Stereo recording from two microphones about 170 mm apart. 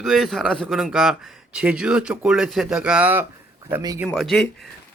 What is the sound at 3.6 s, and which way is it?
Speech, 20° right (ahead or behind).